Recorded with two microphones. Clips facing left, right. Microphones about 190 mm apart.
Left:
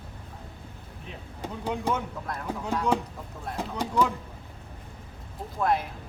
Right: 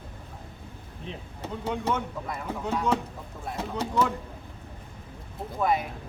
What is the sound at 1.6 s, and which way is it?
Speech, 10° left (ahead or behind).